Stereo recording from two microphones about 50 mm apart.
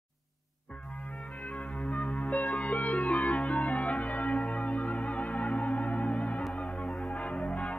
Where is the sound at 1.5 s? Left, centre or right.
Left.